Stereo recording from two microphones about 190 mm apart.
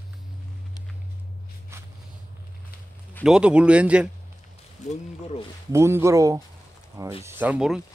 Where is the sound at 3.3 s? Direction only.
5° right (ahead or behind).